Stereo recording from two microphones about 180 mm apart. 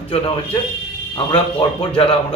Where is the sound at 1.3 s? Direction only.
30° left (ahead or behind).